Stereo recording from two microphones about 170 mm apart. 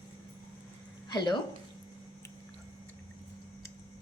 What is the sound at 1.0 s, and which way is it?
Speech, 25° left (ahead or behind).